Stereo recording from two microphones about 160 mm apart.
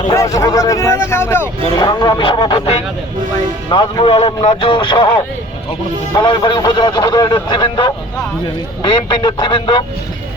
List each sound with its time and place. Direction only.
0.2 s speech: 20° left (ahead or behind)
3.7 s speech: 30° left (ahead or behind)
6.1 s speech: 30° left (ahead or behind)